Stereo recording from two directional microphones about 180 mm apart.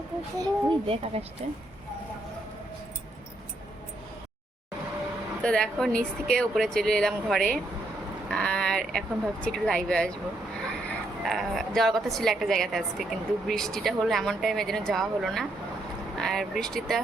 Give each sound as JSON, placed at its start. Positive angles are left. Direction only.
{"t": 0.3, "sound": "speech", "side_deg": -25}
{"t": 5.4, "sound": "a woman's voice", "side_deg": 5}
{"t": 11.2, "sound": "a woman's voice", "side_deg": 0}